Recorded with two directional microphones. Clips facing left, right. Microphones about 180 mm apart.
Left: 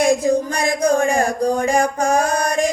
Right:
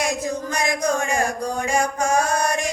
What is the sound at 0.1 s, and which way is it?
Child singing, 35° left (ahead or behind).